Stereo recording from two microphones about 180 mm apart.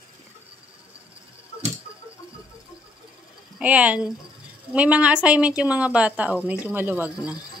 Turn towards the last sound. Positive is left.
turn(degrees=-10)  # may be behind; listen again after turning